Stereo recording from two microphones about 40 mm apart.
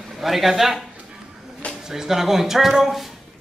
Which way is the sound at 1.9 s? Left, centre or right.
Centre.